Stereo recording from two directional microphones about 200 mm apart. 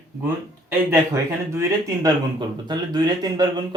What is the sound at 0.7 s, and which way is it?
Speech, 15° right (ahead or behind).